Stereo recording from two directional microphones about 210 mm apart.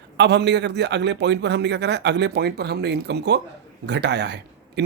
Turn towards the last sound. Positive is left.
turn(degrees=-55)  # may be behind; listen again after turning